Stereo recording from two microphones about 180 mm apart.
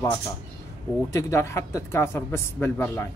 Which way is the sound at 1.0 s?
15° left (ahead or behind).